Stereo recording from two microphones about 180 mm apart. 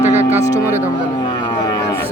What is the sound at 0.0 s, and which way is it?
Music, 10° right (ahead or behind).